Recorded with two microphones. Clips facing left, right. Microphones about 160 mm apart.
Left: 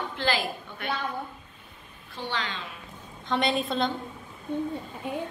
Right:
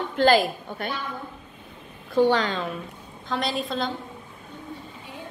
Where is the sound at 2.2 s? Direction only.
45° right (ahead or behind).